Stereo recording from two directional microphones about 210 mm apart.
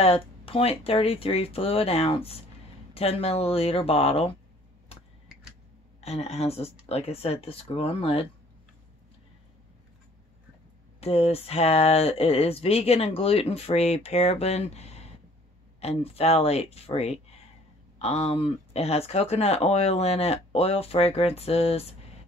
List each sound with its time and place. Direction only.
0.0 s speech: 25° left (ahead or behind)
5.9 s speech: 30° left (ahead or behind)
11.0 s speech: 30° left (ahead or behind)